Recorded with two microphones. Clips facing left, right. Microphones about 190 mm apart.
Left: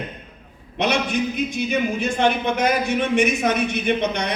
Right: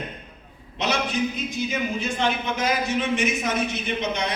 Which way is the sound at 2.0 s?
60° left (ahead or behind).